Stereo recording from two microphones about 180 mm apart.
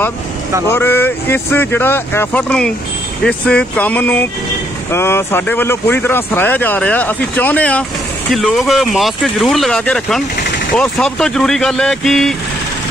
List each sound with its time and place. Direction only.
0.7 s speech: 10° left (ahead or behind)